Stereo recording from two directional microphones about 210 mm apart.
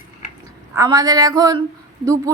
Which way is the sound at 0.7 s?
15° right (ahead or behind).